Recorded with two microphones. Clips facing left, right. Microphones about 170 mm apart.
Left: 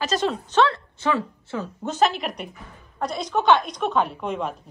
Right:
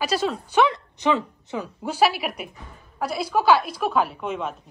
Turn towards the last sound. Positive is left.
turn(degrees=0)  # may be behind; listen again after turning